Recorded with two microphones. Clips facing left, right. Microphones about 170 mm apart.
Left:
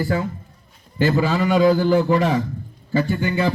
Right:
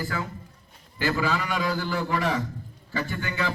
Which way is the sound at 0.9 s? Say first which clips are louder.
Left 7 dB; 25° left (ahead or behind).